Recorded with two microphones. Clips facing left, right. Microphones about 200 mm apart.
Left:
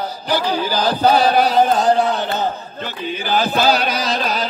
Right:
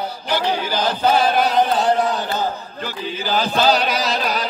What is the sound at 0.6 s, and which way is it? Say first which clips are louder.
Chant: left 3 dB; 35° left (ahead or behind).